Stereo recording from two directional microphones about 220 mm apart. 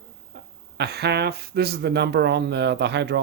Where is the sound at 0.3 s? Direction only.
50° right (ahead or behind).